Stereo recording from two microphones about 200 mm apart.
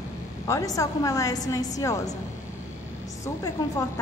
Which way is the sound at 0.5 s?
15° left (ahead or behind).